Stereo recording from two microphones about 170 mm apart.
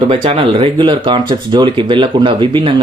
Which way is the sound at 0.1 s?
35° right (ahead or behind).